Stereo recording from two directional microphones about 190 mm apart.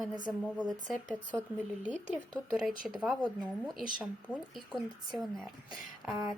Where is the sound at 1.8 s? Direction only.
40° right (ahead or behind).